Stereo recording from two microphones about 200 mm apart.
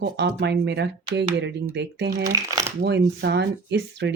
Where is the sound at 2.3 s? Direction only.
15° right (ahead or behind).